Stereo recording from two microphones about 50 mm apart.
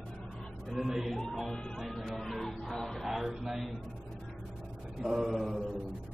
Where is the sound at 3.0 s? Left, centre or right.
Centre.